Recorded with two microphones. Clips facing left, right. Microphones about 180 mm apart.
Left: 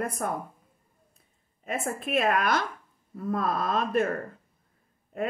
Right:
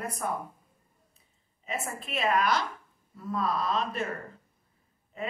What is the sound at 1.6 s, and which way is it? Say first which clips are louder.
Speech: left 4 dB; 55° left (ahead or behind).